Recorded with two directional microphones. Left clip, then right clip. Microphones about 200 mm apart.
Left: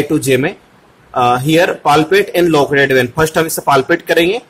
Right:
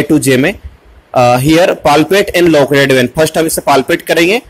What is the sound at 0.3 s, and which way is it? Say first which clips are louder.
A man's voice: right 3 dB; 20° right (ahead or behind).